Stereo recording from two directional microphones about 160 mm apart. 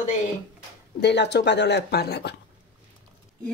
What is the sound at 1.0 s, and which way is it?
Speech, 90° left.